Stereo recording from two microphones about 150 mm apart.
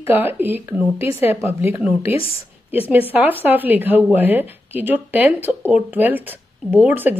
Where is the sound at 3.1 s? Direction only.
10° right (ahead or behind).